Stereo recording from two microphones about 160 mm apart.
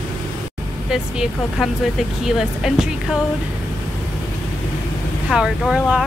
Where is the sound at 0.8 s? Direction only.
5° right (ahead or behind).